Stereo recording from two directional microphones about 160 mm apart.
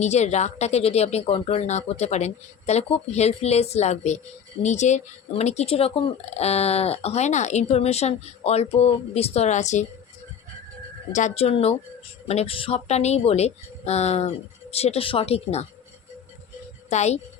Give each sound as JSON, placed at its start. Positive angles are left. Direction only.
{"t": 0.0, "sound": "speech", "side_deg": 45}
{"t": 11.1, "sound": "speech", "side_deg": 45}
{"t": 16.9, "sound": "speech", "side_deg": 45}